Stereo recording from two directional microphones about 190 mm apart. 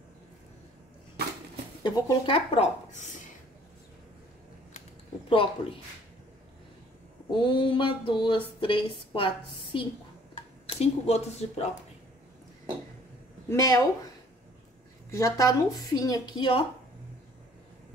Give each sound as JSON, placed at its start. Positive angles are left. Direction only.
{"t": 1.8, "sound": "speech", "side_deg": 25}
{"t": 5.3, "sound": "speech", "side_deg": 30}
{"t": 7.2, "sound": "speech", "side_deg": 25}
{"t": 13.5, "sound": "speech", "side_deg": 15}
{"t": 15.0, "sound": "speech", "side_deg": 15}